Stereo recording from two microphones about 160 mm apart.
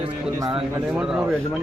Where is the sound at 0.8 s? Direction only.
5° right (ahead or behind).